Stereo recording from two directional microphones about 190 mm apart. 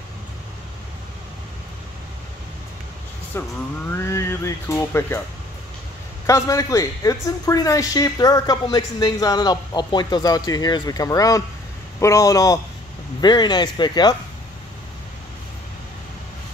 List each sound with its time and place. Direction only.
3.3 s speech: 15° left (ahead or behind)
6.2 s speech: 15° left (ahead or behind)